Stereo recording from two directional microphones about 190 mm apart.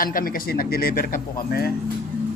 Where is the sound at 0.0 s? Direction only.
45° left (ahead or behind).